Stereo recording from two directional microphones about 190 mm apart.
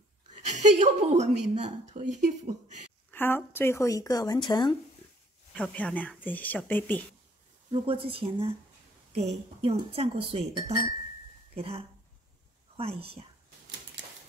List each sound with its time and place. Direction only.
0.3 s a woman's voice: 40° right (ahead or behind)
3.1 s speech: 10° left (ahead or behind)
5.5 s speech: 5° left (ahead or behind)
7.7 s a woman's voice: 30° right (ahead or behind)
14.0 s typewriter: 65° right (ahead or behind)